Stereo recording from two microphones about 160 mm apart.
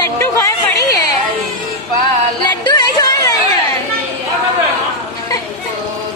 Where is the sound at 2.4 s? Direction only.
30° left (ahead or behind).